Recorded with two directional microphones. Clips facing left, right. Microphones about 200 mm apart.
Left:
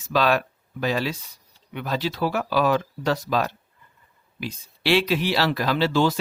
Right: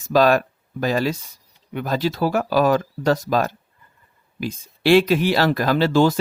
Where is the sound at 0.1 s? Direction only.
45° right (ahead or behind).